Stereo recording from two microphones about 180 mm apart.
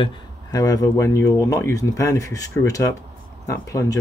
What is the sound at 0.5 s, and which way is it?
Speech, 20° left (ahead or behind).